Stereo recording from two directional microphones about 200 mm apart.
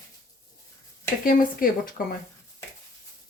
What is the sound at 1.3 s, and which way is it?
Speech, 45° left (ahead or behind).